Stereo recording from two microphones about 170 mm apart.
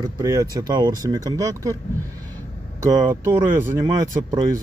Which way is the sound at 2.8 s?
25° right (ahead or behind).